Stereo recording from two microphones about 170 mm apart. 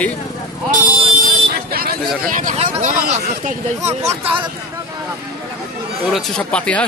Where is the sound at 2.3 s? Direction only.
50° right (ahead or behind).